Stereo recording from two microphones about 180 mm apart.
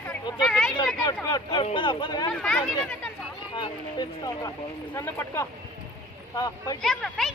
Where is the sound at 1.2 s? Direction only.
25° left (ahead or behind).